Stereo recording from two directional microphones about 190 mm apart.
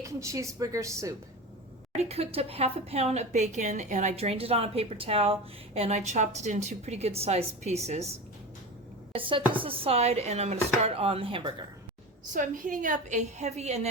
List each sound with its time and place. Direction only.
0.0 s a woman's voice: 15° right (ahead or behind)
2.0 s speech: 35° right (ahead or behind)
9.1 s speech: 25° right (ahead or behind)
12.3 s speech: 45° right (ahead or behind)